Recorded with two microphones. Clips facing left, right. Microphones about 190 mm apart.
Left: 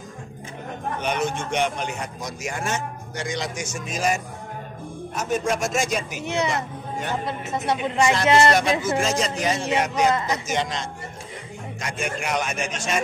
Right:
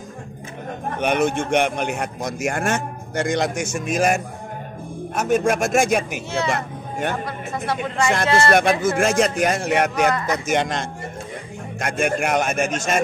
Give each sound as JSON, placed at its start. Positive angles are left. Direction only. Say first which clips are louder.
{"t": 1.0, "sound": "a man's voice", "louder": "right 7 dB", "side_deg": -55}
{"t": 6.2, "sound": "speech", "louder": "right 1 dB", "side_deg": 20}
{"t": 6.5, "sound": "speech", "louder": "right 2 dB", "side_deg": -55}
{"t": 7.2, "sound": "speech", "louder": "left 1 dB", "side_deg": 20}
{"t": 8.8, "sound": "a man's voice", "louder": "right 5 dB", "side_deg": -55}